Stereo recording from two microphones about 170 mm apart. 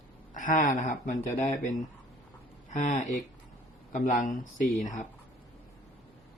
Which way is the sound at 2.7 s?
50° left (ahead or behind).